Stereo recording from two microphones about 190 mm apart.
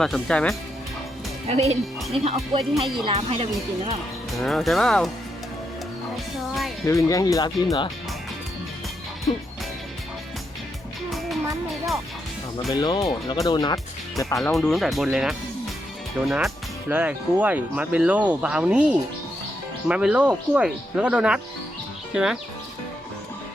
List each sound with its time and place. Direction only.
0.0 s speech: 5° left (ahead or behind)
1.5 s speech: 30° right (ahead or behind)
4.4 s speech: centre (ahead or behind)
6.1 s speech: centre (ahead or behind)
6.8 s speech: 15° left (ahead or behind)
12.7 s speech: 20° left (ahead or behind)
14.3 s speech: centre (ahead or behind)